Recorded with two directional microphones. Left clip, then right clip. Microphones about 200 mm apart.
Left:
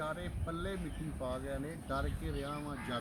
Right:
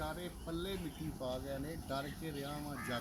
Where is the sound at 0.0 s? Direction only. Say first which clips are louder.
Left 3 dB; 15° left (ahead or behind).